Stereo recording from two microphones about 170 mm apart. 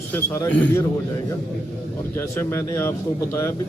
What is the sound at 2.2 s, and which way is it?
Speech, 15° left (ahead or behind).